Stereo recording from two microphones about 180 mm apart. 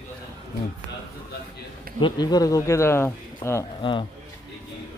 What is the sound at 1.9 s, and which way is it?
Speech, 25° left (ahead or behind).